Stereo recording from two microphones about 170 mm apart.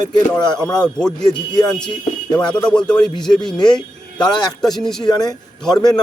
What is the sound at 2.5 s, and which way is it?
Speech, 5° left (ahead or behind).